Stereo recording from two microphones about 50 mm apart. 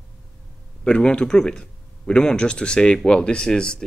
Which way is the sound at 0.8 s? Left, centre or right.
Centre.